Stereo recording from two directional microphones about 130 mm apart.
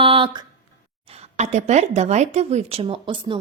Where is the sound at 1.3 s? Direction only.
60° right (ahead or behind).